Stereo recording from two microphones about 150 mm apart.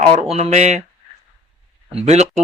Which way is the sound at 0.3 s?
50° right (ahead or behind).